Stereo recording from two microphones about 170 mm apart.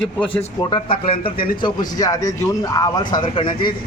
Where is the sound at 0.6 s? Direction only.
25° left (ahead or behind).